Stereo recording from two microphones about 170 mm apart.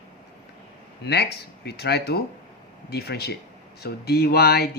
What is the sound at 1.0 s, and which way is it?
Speech, 75° left (ahead or behind).